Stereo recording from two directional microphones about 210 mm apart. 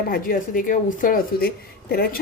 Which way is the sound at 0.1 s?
40° left (ahead or behind).